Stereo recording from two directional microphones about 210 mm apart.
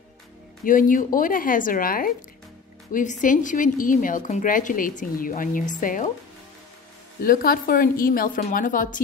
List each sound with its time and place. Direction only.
0.7 s a woman's voice: 40° left (ahead or behind)
7.2 s a woman's voice: 45° left (ahead or behind)